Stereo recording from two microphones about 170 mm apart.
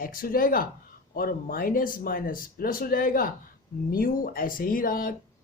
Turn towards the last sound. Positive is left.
turn(degrees=55)  # may be behind; listen again after turning